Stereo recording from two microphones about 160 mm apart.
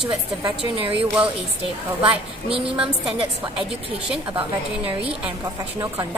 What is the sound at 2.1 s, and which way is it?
Speech, 35° right (ahead or behind).